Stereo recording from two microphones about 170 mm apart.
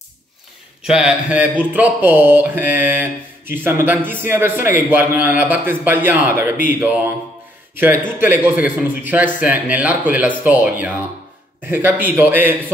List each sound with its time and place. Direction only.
0.8 s speech: 5° right (ahead or behind)